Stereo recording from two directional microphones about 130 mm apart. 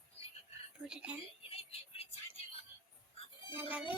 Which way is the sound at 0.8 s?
10° right (ahead or behind).